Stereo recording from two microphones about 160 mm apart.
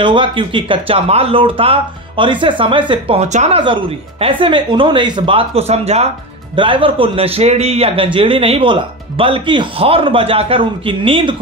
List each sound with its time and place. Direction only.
0.0 s a man's voice: 30° right (ahead or behind)
3.5 s a man's voice: 30° right (ahead or behind)